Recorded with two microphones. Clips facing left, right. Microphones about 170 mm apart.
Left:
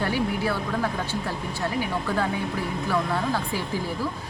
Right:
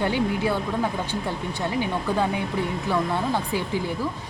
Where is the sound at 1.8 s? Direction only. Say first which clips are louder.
Right 3 dB; 15° right (ahead or behind).